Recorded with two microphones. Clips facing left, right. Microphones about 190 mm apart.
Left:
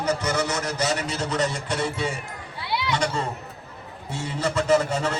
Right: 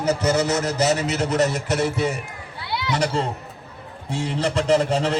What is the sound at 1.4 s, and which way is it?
Speech, 5° right (ahead or behind).